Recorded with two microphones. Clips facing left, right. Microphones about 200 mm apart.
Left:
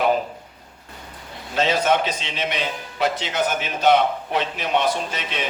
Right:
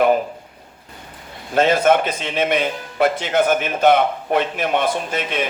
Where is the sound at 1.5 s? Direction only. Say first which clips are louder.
Right 5 dB; 50° right (ahead or behind).